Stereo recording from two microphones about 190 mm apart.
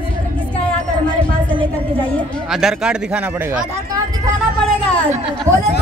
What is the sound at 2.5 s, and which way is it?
A man's voice, centre (ahead or behind).